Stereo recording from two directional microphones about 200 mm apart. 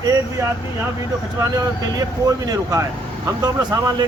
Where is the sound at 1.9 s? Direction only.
20° right (ahead or behind).